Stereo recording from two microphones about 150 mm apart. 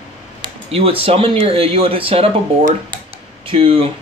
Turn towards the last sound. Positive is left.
turn(degrees=-35)  # may be behind; listen again after turning